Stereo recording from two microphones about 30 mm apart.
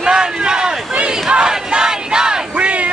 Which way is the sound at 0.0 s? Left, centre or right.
Right.